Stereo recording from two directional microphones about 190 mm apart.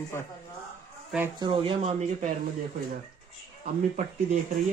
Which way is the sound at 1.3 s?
25° right (ahead or behind).